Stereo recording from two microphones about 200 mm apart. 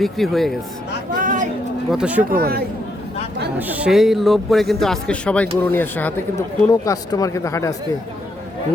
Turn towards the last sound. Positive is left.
turn(degrees=15)  # may be behind; listen again after turning